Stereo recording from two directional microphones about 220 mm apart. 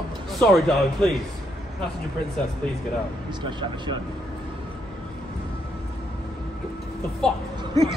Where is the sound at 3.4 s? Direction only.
20° right (ahead or behind).